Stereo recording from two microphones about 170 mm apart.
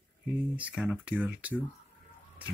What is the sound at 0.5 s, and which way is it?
Speech, 5° right (ahead or behind).